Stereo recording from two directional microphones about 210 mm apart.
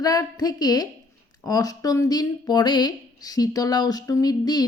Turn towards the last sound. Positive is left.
turn(degrees=20)  # may be behind; listen again after turning